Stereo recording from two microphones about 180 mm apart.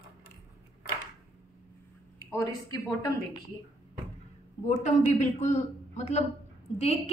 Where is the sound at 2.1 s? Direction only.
20° left (ahead or behind).